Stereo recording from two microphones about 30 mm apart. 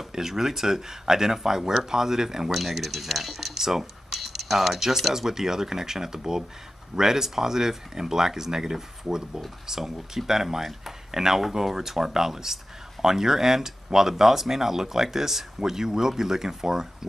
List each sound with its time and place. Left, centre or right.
0.1 s speech: centre